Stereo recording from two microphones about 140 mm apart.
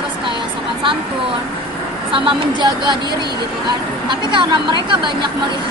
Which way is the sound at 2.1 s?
35° right (ahead or behind).